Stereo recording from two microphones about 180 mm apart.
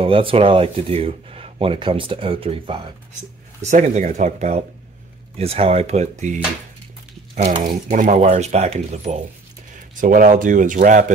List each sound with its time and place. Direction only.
0.0 s speech: 30° right (ahead or behind)
3.6 s speech: 40° right (ahead or behind)